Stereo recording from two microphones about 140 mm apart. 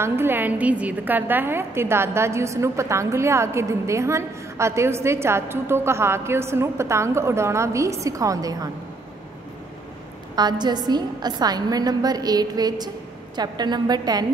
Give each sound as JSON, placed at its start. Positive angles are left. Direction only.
{"t": 0.0, "sound": "a woman's voice", "side_deg": -15}
{"t": 10.3, "sound": "a woman's voice", "side_deg": -30}